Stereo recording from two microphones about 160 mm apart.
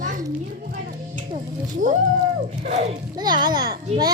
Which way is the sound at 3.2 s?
25° right (ahead or behind).